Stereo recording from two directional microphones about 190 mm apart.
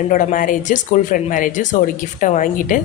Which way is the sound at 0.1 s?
45° left (ahead or behind).